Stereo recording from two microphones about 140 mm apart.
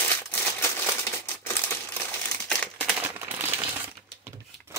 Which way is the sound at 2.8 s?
10° right (ahead or behind).